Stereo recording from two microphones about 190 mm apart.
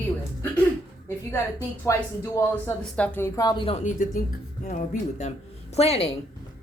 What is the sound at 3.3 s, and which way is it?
Speech, 25° left (ahead or behind).